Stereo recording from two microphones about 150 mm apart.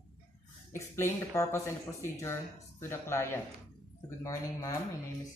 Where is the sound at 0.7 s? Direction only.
20° left (ahead or behind).